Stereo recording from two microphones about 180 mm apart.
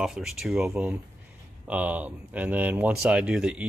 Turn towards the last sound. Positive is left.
turn(degrees=-5)  # may be behind; listen again after turning